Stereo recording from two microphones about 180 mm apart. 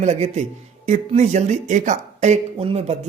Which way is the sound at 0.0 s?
40° right (ahead or behind).